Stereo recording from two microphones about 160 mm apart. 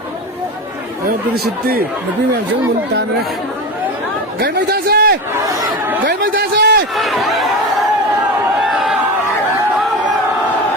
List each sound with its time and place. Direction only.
4.4 s a man's voice: 75° right (ahead or behind)
5.5 s chatter: 15° right (ahead or behind)
6.1 s a sound: 65° right (ahead or behind); by 6.8 s 85° right
6.9 s chatter: centre (ahead or behind)